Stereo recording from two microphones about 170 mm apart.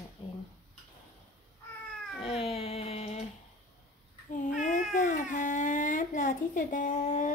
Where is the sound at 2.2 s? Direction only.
35° left (ahead or behind).